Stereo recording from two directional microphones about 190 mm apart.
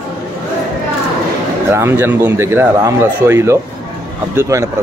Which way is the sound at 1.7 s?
15° right (ahead or behind).